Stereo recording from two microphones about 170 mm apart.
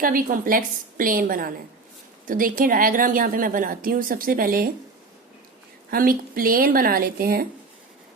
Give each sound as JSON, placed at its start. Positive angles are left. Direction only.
{"t": 0.0, "sound": "a woman's voice", "side_deg": -55}
{"t": 5.9, "sound": "a woman's voice", "side_deg": -60}